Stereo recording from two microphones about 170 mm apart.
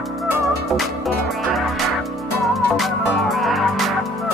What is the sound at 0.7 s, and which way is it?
Music, centre (ahead or behind).